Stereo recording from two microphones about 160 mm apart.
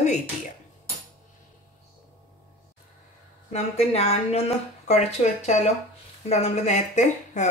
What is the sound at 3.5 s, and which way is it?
Speech, 40° left (ahead or behind).